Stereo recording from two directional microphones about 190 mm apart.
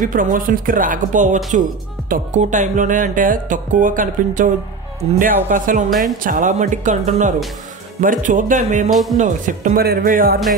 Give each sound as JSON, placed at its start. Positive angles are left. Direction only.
{"t": 0.0, "sound": "speech", "side_deg": -45}
{"t": 5.9, "sound": "speech", "side_deg": 0}
{"t": 6.2, "sound": "speech", "side_deg": -45}